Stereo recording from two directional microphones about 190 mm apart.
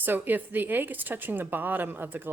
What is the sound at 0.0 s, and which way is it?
A woman's voice, 10° right (ahead or behind).